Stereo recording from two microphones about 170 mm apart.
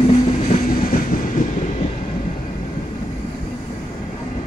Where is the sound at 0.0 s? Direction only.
40° left (ahead or behind).